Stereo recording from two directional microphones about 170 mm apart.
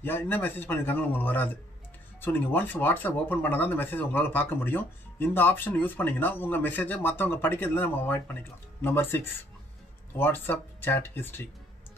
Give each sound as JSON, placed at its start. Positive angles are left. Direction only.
{"t": 0.0, "sound": "speech", "side_deg": 10}